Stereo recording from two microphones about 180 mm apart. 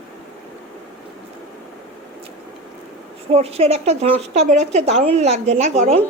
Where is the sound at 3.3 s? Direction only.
35° right (ahead or behind).